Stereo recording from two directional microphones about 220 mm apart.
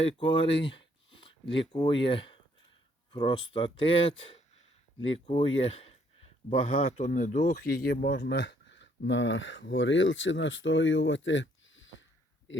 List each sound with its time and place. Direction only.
0.0 s speech: 25° left (ahead or behind); by 12.0 s 60° left (ahead or behind)